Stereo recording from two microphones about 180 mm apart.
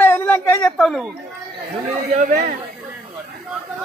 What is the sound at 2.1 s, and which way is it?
Speech, 50° right (ahead or behind).